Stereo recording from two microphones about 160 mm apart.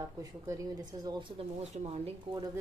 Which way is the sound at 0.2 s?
20° right (ahead or behind).